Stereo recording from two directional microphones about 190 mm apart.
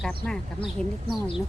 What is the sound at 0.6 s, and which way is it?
Speech, 30° left (ahead or behind).